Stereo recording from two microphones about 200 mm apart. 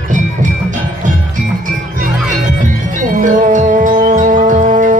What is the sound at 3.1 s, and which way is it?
Music, 40° right (ahead or behind).